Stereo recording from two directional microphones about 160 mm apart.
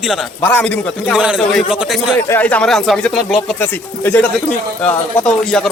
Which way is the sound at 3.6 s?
10° left (ahead or behind).